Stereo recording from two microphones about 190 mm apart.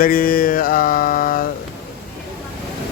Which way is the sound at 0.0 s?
50° left (ahead or behind).